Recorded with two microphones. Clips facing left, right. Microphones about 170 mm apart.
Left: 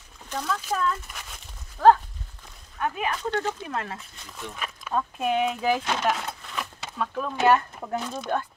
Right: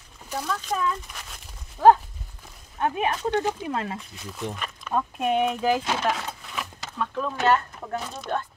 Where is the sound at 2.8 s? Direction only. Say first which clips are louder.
Right 3 dB; 30° right (ahead or behind).